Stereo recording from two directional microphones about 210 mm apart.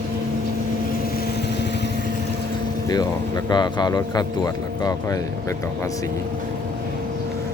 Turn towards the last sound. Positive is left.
turn(degrees=15)  # may be behind; listen again after turning